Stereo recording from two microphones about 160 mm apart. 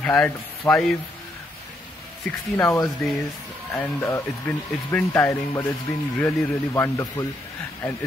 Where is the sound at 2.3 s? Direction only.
15° left (ahead or behind).